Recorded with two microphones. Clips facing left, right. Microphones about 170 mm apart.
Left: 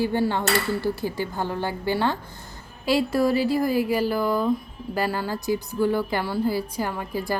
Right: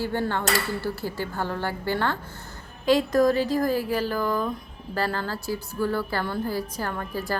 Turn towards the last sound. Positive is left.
turn(degrees=10)  # may be behind; listen again after turning